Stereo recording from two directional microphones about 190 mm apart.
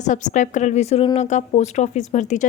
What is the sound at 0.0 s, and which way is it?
A woman's voice, 40° left (ahead or behind).